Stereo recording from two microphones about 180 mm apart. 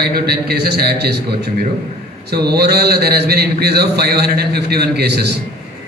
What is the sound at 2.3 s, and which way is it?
A man's voice, 60° right (ahead or behind).